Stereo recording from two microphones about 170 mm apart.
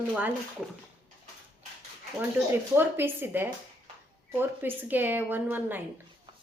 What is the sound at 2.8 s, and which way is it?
Speech, 10° right (ahead or behind).